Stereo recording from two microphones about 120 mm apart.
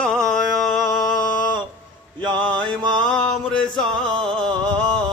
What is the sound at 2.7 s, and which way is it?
Music, 5° left (ahead or behind).